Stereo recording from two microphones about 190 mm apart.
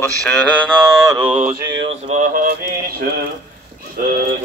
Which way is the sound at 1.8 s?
35° right (ahead or behind).